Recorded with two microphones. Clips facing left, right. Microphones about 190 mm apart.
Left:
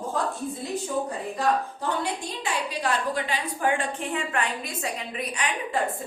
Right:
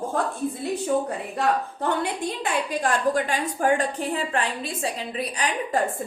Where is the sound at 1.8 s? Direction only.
55° right (ahead or behind); by 5.8 s 35° right (ahead or behind).